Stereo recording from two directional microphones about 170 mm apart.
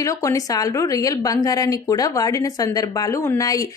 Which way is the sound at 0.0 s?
20° left (ahead or behind).